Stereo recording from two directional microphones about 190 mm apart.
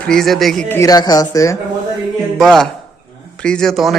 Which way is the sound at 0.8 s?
20° left (ahead or behind).